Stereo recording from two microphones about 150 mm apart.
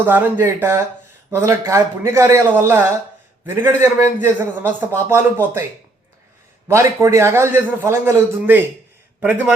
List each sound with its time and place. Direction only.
0.0 s a man's voice: 15° right (ahead or behind)
6.7 s a man's voice: 20° right (ahead or behind)